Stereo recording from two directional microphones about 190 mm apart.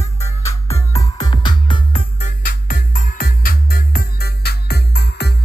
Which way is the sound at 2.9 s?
45° left (ahead or behind).